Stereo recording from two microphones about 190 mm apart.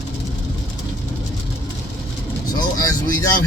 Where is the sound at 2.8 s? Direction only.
20° left (ahead or behind).